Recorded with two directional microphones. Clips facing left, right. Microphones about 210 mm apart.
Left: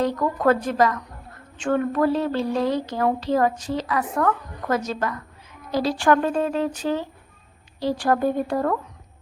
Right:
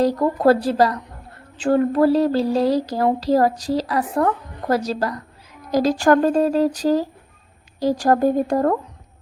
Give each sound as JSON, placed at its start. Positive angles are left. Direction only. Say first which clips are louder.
{"t": 0.0, "sound": "a woman's voice", "louder": "right 4 dB", "side_deg": -35}